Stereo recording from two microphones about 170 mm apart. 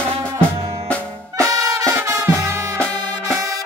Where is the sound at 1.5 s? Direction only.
20° right (ahead or behind).